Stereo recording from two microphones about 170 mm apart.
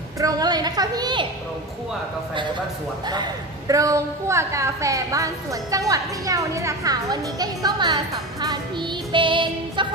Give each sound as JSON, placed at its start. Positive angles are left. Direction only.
{"t": 0.2, "sound": "a woman's voice", "side_deg": -20}
{"t": 3.1, "sound": "a woman's voice", "side_deg": -25}
{"t": 9.1, "sound": "music", "side_deg": -30}